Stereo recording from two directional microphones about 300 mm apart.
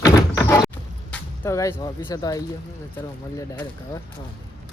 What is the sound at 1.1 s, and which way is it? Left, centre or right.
Speech, centre.